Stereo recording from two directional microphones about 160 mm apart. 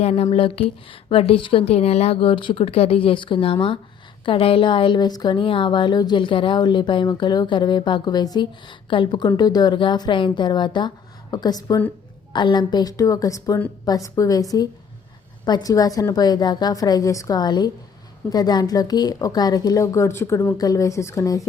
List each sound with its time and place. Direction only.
0.0 s a woman's voice: 40° left (ahead or behind); by 21.4 s 20° left (ahead or behind)